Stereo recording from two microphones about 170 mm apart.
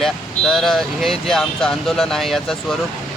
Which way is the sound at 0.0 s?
Centre (ahead or behind).